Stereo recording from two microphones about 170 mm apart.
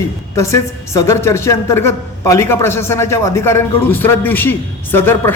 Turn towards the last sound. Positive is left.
turn(degrees=15)  # may be behind; listen again after turning